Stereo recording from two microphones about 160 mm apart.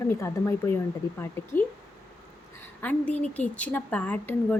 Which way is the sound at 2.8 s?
10° left (ahead or behind).